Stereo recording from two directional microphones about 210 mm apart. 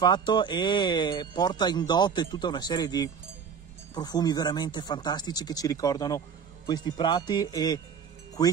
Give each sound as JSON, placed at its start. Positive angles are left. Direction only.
{"t": 0.0, "sound": "speech", "side_deg": 20}